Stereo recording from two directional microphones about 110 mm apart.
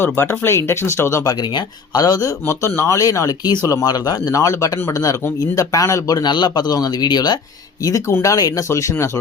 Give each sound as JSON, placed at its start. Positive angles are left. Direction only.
{"t": 0.0, "sound": "speech", "side_deg": 20}